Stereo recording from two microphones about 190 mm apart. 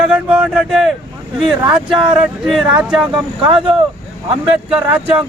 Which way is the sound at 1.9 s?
25° right (ahead or behind).